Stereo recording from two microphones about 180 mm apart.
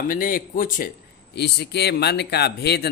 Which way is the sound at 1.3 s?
65° left (ahead or behind).